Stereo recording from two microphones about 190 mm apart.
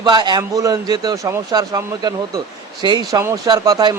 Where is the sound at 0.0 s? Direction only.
20° right (ahead or behind).